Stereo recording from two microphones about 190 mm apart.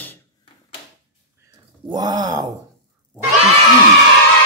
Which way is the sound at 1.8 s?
20° right (ahead or behind).